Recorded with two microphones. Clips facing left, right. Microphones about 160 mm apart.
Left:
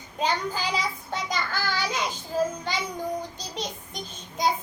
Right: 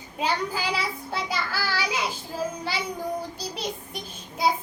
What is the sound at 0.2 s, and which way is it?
Child singing, 10° right (ahead or behind).